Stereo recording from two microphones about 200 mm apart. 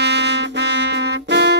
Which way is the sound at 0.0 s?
60° right (ahead or behind).